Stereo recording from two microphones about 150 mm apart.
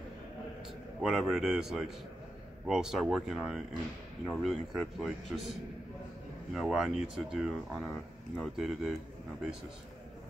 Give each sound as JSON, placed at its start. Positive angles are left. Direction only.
{"t": 1.0, "sound": "speech", "side_deg": -5}